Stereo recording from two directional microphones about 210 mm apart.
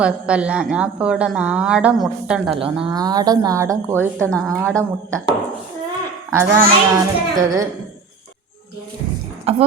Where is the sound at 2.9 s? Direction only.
20° right (ahead or behind).